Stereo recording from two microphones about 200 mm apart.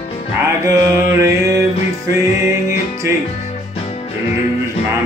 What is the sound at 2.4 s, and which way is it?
Music, 15° right (ahead or behind).